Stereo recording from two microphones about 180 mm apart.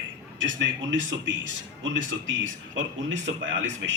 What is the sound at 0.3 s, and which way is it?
A man's voice, 90° right.